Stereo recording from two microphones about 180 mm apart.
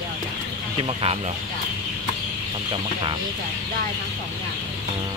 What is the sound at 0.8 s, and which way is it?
Speech, 30° right (ahead or behind).